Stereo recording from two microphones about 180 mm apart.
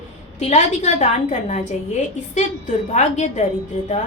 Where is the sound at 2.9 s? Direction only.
40° left (ahead or behind).